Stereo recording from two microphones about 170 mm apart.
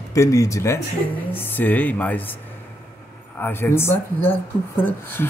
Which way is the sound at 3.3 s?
15° left (ahead or behind).